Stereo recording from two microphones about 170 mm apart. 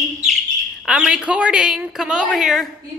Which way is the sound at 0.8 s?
5° right (ahead or behind).